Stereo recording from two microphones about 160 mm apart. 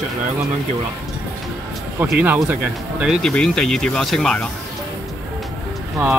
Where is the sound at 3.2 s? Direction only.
5° left (ahead or behind).